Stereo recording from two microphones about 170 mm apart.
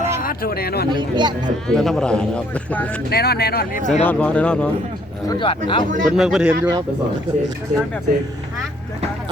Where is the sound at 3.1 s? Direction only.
70° left (ahead or behind); by 4.0 s 45° left (ahead or behind).